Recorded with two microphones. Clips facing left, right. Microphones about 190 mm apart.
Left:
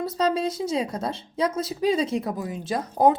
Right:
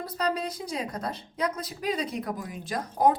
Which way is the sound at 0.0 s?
25° left (ahead or behind).